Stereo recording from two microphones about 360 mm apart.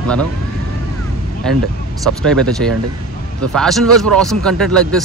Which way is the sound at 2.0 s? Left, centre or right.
Centre.